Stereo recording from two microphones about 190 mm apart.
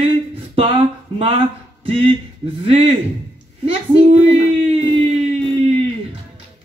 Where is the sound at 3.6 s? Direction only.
35° right (ahead or behind).